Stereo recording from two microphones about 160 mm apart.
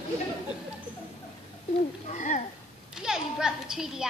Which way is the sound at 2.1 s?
50° left (ahead or behind).